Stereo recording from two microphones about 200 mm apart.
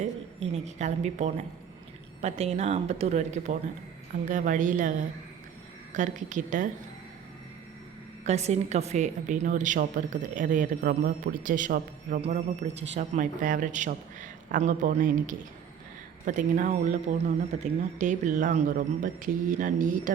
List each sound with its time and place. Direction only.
0.3 s a woman's voice: 35° right (ahead or behind)
8.2 s a woman's voice: 35° right (ahead or behind)